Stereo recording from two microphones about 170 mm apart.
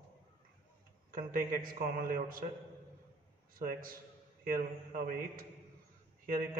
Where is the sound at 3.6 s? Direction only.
55° right (ahead or behind).